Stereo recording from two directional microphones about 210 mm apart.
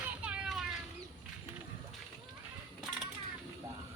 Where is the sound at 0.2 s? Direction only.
5° right (ahead or behind).